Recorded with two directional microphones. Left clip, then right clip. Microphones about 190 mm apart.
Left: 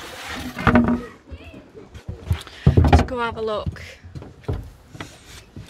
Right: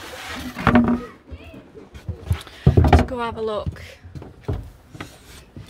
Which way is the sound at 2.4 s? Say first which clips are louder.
Right 1 dB; 15° right (ahead or behind).